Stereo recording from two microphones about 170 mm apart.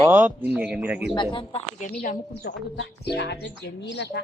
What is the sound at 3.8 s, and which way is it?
Speech, 85° left.